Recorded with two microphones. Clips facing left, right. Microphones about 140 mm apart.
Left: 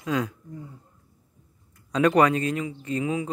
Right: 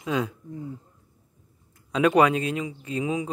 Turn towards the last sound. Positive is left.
turn(degrees=-15)  # may be behind; listen again after turning